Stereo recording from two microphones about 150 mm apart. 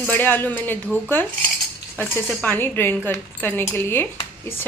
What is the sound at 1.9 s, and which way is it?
Cutlery, 15° left (ahead or behind).